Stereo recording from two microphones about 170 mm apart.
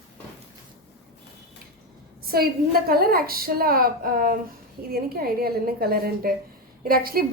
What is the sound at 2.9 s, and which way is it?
A woman's voice, 60° right (ahead or behind).